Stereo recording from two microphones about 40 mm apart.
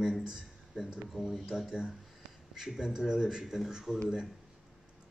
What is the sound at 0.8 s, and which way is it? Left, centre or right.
A man's voice, centre.